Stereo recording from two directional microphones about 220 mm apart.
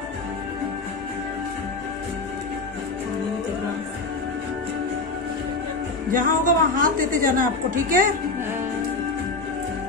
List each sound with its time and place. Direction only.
6.1 s a woman's voice: 40° right (ahead or behind)